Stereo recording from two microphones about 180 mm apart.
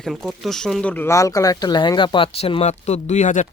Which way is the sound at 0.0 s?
Centre (ahead or behind).